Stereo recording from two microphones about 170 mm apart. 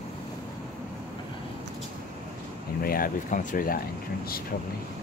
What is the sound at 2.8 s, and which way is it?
Speech, 60° left (ahead or behind).